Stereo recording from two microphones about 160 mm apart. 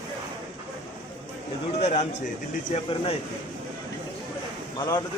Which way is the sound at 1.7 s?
45° left (ahead or behind).